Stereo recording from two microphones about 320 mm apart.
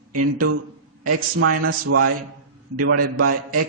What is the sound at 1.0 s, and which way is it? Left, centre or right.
A man's voice, right.